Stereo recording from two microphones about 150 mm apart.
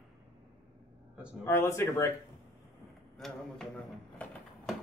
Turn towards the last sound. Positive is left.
turn(degrees=5)  # may be behind; listen again after turning